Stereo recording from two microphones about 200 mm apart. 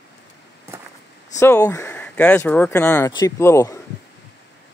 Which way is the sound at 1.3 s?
15° left (ahead or behind).